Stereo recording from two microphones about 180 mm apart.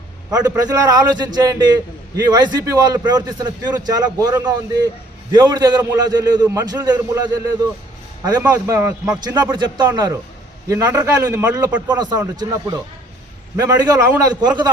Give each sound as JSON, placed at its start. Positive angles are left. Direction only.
{"t": 0.3, "sound": "a man's voice", "side_deg": -20}